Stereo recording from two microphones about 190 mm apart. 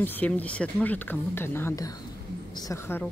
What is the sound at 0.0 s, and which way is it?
A woman's voice, 10° left (ahead or behind).